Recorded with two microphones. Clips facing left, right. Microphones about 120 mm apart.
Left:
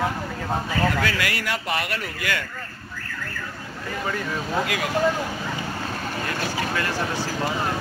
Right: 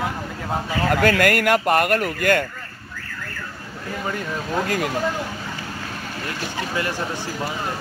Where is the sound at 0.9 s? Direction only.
50° right (ahead or behind).